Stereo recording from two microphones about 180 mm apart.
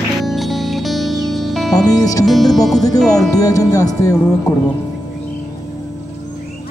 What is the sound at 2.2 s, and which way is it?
Music, centre (ahead or behind).